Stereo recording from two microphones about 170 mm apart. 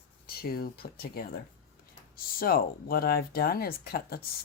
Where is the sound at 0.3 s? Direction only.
65° left (ahead or behind).